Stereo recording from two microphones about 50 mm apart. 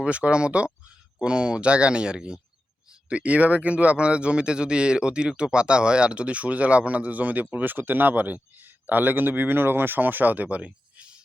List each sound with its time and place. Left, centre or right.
0.0 s speech: right